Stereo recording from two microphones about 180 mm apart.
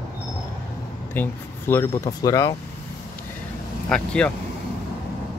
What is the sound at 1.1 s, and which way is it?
Speech, 10° left (ahead or behind).